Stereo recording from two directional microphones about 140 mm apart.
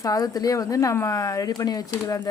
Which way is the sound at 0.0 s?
25° left (ahead or behind).